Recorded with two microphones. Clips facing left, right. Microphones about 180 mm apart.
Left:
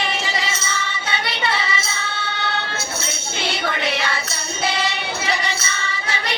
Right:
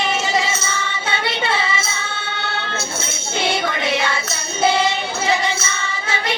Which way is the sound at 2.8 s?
50° right (ahead or behind).